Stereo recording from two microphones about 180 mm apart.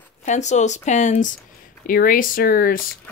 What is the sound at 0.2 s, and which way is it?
Speech, 40° left (ahead or behind).